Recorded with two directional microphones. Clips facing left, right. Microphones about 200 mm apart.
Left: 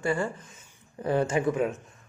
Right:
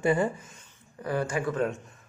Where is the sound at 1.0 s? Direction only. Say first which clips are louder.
Left 4 dB; 25° left (ahead or behind).